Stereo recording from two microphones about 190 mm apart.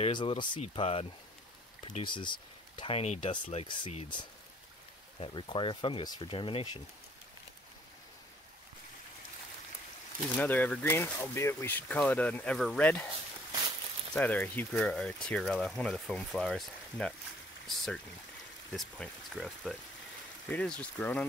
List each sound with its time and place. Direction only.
0.0 s speech: 25° left (ahead or behind)
10.4 s speech: 10° left (ahead or behind)
14.1 s speech: 5° left (ahead or behind)